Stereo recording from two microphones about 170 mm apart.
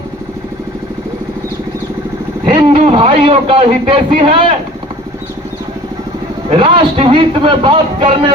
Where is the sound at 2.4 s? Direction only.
35° right (ahead or behind).